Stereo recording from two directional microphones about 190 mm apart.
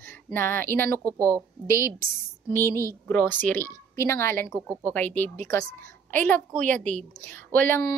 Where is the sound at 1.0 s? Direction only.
15° right (ahead or behind).